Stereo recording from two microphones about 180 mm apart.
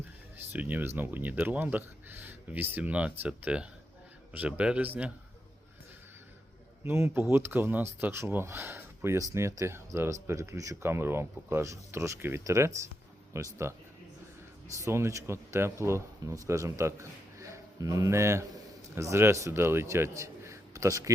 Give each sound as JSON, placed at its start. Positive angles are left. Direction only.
{"t": 0.5, "sound": "speech", "side_deg": -10}
{"t": 6.8, "sound": "a man's voice", "side_deg": -15}